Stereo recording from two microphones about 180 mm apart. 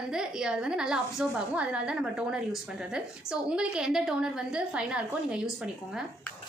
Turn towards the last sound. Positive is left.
turn(degrees=-5)  # may be behind; listen again after turning